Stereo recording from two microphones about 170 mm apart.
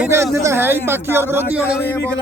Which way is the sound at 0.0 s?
15° right (ahead or behind).